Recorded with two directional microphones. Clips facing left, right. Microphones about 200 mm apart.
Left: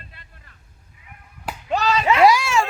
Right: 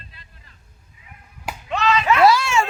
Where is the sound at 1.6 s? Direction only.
40° left (ahead or behind).